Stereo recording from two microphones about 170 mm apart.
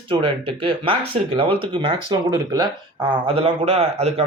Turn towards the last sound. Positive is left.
turn(degrees=-35)  # may be behind; listen again after turning